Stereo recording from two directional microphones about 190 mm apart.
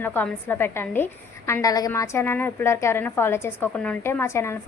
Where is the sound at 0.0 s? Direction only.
10° left (ahead or behind).